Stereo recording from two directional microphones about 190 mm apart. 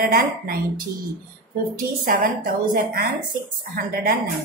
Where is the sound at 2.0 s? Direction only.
50° right (ahead or behind).